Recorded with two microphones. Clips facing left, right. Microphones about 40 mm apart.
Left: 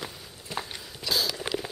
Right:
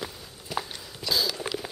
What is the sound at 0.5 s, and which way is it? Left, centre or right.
Biting, centre.